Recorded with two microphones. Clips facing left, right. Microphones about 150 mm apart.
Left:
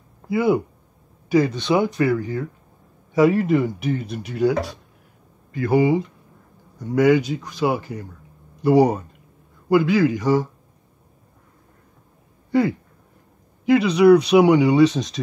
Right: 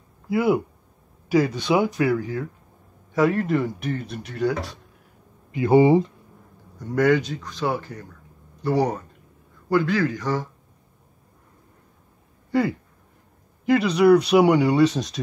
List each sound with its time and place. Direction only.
0.3 s speech: centre (ahead or behind)
5.5 s speech: 20° right (ahead or behind)
6.8 s speech: 5° left (ahead or behind)
12.4 s a sound: centre (ahead or behind)
13.7 s speech: centre (ahead or behind)